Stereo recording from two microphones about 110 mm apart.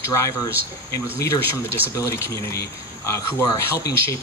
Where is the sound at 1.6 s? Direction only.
25° left (ahead or behind).